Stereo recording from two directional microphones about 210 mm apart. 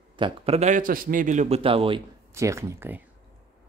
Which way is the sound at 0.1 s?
25° right (ahead or behind).